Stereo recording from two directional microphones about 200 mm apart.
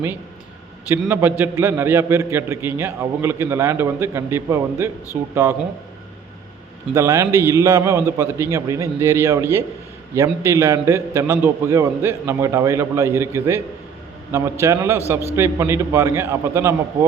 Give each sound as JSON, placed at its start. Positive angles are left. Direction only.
{"t": 0.9, "sound": "a man's voice", "side_deg": -10}
{"t": 6.9, "sound": "a man's voice", "side_deg": -15}
{"t": 14.6, "sound": "a man's voice", "side_deg": -15}